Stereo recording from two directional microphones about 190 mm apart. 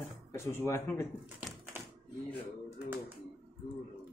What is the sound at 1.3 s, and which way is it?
Typewriter, 10° right (ahead or behind).